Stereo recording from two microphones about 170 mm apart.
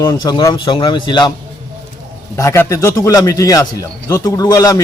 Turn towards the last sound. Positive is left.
turn(degrees=20)  # may be behind; listen again after turning